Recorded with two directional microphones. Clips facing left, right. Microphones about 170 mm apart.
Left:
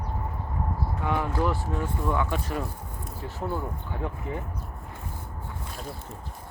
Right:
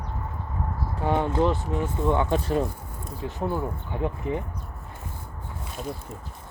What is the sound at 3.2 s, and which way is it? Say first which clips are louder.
Speech: right 4 dB; 20° right (ahead or behind).